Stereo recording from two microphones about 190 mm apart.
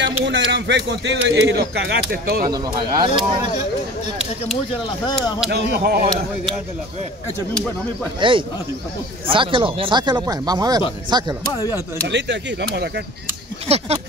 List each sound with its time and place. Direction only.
0.0 s speech: 70° right (ahead or behind)
2.5 s speech: 20° right (ahead or behind)
5.5 s speech: 55° right (ahead or behind)
7.5 s speech: 5° left (ahead or behind)
8.2 s speech: 25° right (ahead or behind)
12.1 s speech: 65° right (ahead or behind)